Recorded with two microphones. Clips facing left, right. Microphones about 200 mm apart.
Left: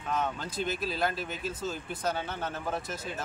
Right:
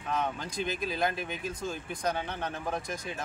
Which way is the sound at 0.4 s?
15° right (ahead or behind).